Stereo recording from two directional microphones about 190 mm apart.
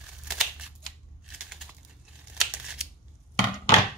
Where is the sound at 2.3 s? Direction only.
5° right (ahead or behind).